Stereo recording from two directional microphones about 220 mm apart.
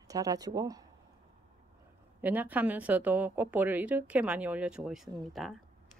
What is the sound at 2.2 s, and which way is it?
Speech, 10° right (ahead or behind).